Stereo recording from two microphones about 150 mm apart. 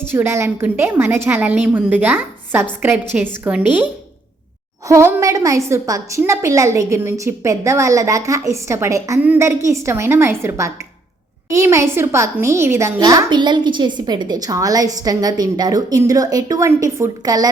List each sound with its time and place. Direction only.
0.1 s a woman's voice: 15° right (ahead or behind)
4.9 s a woman's voice: 15° right (ahead or behind)